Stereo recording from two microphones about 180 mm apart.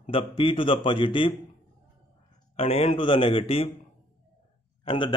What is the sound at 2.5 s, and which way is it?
A man's voice, 35° left (ahead or behind).